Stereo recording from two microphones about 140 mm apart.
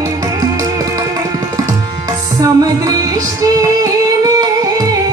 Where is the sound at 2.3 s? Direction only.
25° right (ahead or behind).